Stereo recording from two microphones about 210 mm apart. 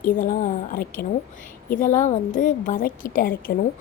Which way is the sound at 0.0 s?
40° left (ahead or behind).